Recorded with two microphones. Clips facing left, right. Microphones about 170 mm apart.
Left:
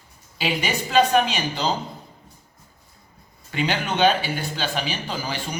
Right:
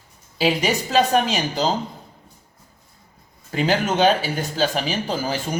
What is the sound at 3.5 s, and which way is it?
Speech, 40° right (ahead or behind).